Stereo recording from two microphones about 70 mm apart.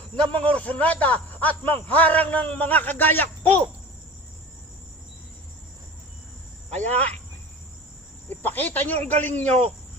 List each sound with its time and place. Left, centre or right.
0.2 s a man's voice: centre
6.9 s a man's voice: centre
8.3 s a man's voice: left